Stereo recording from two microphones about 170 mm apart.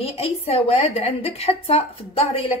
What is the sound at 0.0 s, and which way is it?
A woman's voice, 35° left (ahead or behind).